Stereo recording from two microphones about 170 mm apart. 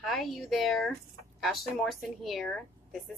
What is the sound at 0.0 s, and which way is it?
Speech, centre (ahead or behind).